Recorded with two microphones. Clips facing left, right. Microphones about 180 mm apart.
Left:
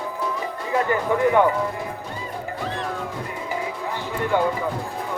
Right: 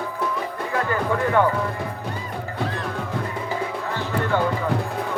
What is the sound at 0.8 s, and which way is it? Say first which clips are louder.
Music: left 3 dB; 15° left (ahead or behind).